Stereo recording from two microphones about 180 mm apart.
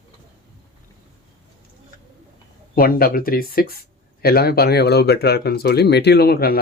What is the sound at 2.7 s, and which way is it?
Speech, 55° left (ahead or behind).